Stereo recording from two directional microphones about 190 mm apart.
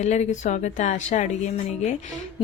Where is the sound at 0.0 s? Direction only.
35° left (ahead or behind).